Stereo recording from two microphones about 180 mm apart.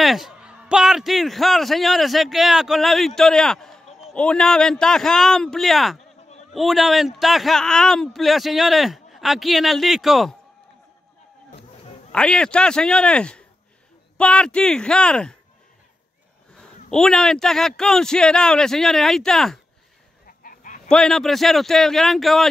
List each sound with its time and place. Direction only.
0.0 s speech: centre (ahead or behind)
12.1 s speech: 5° left (ahead or behind)
16.5 s speech: 5° left (ahead or behind)
20.2 s chicken: 50° left (ahead or behind)
20.9 s speech: 5° left (ahead or behind)